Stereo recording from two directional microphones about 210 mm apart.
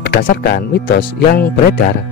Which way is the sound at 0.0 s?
45° left (ahead or behind).